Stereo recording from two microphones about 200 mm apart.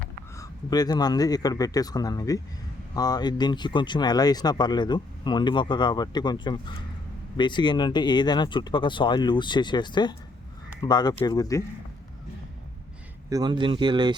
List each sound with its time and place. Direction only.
0.3 s speech: 20° left (ahead or behind)
13.3 s speech: 20° right (ahead or behind)